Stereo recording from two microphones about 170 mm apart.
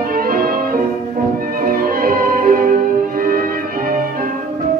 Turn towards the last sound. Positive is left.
turn(degrees=-55)  # may be behind; listen again after turning